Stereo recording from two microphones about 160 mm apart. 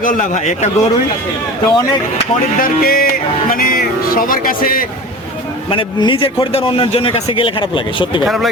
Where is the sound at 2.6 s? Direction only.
65° left (ahead or behind).